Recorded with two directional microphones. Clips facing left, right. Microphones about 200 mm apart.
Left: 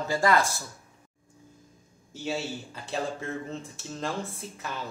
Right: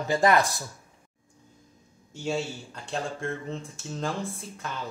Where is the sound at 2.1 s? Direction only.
5° left (ahead or behind).